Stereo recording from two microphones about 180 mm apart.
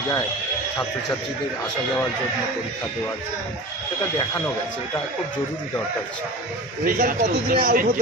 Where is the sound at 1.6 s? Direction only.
5° left (ahead or behind).